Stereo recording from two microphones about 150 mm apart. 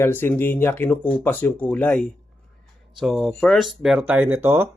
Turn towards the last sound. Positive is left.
turn(degrees=-15)  # may be behind; listen again after turning